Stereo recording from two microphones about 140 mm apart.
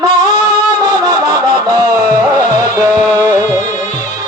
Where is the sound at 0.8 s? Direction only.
25° right (ahead or behind).